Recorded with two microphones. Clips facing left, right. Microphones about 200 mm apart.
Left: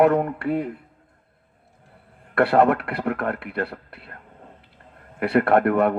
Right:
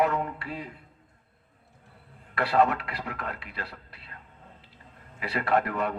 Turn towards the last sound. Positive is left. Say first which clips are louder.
# left 8 dB
turn(degrees=60)  # may be behind; listen again after turning